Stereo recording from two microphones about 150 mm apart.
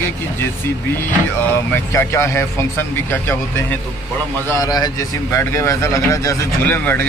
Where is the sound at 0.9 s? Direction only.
15° left (ahead or behind).